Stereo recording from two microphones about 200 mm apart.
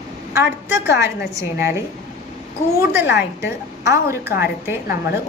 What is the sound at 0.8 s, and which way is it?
Speech, 55° left (ahead or behind).